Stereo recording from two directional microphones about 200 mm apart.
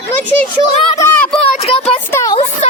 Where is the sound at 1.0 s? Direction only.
15° left (ahead or behind).